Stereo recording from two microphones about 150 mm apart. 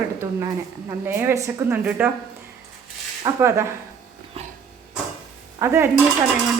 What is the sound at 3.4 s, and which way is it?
Speech, 15° right (ahead or behind).